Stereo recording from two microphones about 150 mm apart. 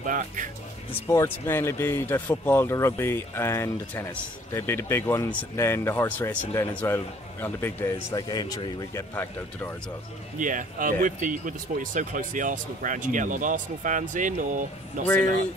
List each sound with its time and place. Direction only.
0.0 s speech: 60° right (ahead or behind)
1.0 s speech: 20° left (ahead or behind)
8.1 s speech: 30° left (ahead or behind)
9.1 s speech: 15° left (ahead or behind)
10.4 s speech: 60° right (ahead or behind)